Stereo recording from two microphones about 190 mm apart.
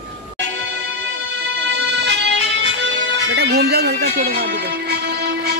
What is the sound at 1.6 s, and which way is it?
Music, 70° right (ahead or behind).